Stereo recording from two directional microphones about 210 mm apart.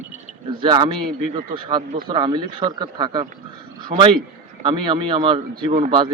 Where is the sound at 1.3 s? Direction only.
40° right (ahead or behind).